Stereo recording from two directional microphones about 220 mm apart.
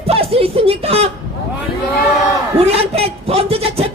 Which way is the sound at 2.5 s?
25° right (ahead or behind).